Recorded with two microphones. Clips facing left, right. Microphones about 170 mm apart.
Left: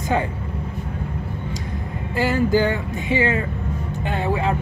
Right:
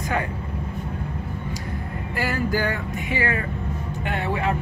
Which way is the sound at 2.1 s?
25° left (ahead or behind).